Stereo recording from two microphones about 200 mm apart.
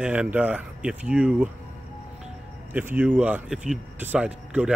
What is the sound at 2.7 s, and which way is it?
Speech, 10° right (ahead or behind).